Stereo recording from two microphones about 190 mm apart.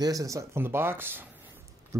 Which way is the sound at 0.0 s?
15° right (ahead or behind).